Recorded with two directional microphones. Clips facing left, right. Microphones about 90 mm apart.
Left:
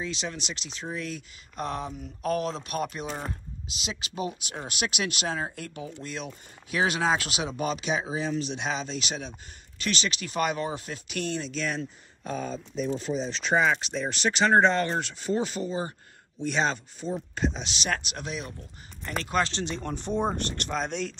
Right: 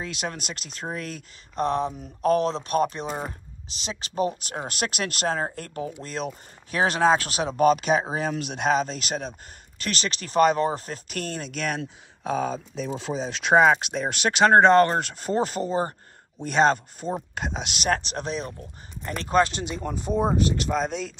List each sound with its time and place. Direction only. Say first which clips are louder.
0.0 s speech: right 2 dB; 55° right (ahead or behind)
1.5 s speech: right 8 dB; 30° right (ahead or behind); by 17.8 s 60° right (ahead or behind)
17.8 s speech: right 6 dB; 40° right (ahead or behind)
19.2 s speech: right 6 dB; 20° right (ahead or behind); by 21.1 s 5° right (ahead or behind)